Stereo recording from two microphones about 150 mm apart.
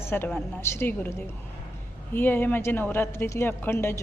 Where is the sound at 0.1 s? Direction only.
10° left (ahead or behind).